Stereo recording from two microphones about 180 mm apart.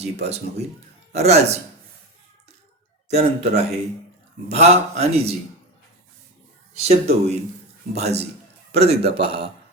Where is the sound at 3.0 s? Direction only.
35° right (ahead or behind).